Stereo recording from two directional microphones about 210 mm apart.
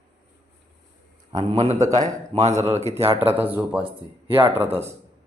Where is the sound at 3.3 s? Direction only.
10° right (ahead or behind).